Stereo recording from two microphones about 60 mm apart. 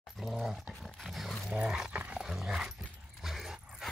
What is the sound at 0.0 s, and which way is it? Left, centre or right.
Dog, centre.